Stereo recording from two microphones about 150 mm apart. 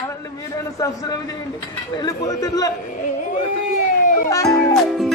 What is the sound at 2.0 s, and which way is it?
Speech, 25° left (ahead or behind).